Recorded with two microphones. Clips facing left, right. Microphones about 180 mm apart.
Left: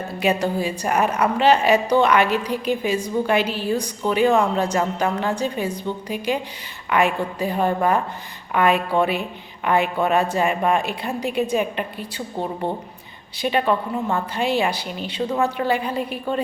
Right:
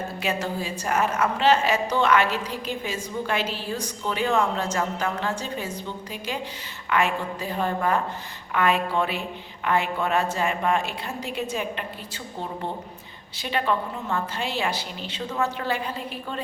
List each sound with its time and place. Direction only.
0.2 s a woman's voice: 15° left (ahead or behind)
13.4 s a woman's voice: 15° left (ahead or behind)